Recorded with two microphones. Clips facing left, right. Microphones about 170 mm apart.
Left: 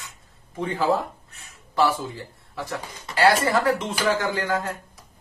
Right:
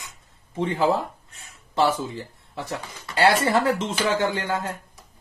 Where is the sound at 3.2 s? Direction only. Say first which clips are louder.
Even; 30° right (ahead or behind).